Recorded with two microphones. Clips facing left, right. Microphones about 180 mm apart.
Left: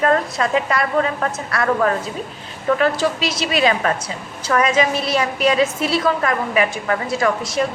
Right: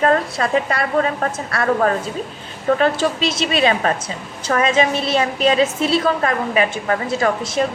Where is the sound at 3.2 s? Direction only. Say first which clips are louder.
Right 1 dB; 25° right (ahead or behind).